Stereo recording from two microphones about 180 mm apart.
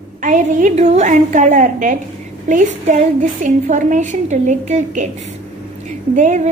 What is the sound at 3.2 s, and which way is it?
A woman's voice, 45° right (ahead or behind).